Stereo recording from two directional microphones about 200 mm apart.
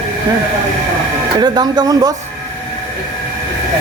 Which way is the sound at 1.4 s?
20° right (ahead or behind).